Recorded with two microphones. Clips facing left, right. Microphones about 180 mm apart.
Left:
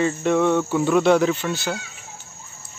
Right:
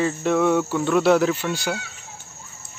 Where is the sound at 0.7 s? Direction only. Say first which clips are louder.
Left 2 dB; centre (ahead or behind).